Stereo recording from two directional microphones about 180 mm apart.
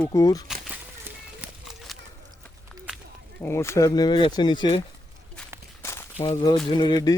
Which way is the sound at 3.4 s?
15° left (ahead or behind).